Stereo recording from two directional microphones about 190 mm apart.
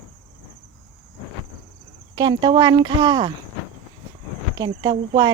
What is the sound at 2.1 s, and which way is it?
Speech, 25° right (ahead or behind).